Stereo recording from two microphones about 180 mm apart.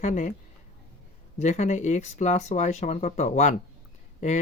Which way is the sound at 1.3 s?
40° left (ahead or behind).